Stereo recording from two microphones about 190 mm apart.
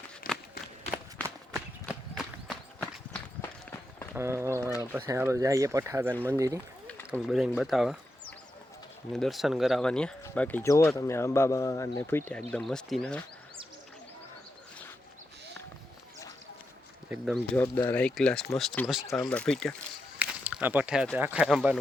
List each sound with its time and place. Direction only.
1.5 s run: 5° right (ahead or behind)
3.4 s run: 10° left (ahead or behind)
4.1 s a sound: 15° right (ahead or behind)
4.8 s speech: 15° right (ahead or behind)
7.1 s speech: centre (ahead or behind)
9.1 s speech: centre (ahead or behind)
17.1 s speech: centre (ahead or behind)
20.1 s speech: 5° right (ahead or behind)